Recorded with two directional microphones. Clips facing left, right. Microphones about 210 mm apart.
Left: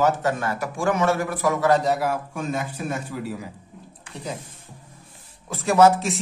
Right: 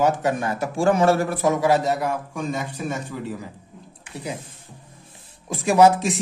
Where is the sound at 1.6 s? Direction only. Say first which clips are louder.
Even; 5° right (ahead or behind).